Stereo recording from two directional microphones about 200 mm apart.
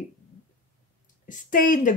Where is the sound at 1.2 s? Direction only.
40° left (ahead or behind).